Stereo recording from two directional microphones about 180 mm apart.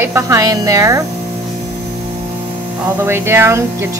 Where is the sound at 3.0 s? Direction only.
15° right (ahead or behind).